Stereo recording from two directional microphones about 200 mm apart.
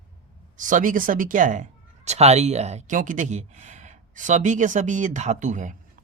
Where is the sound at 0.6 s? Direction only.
40° right (ahead or behind).